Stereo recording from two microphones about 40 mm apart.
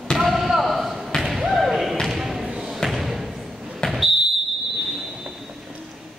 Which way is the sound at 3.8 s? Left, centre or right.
Centre.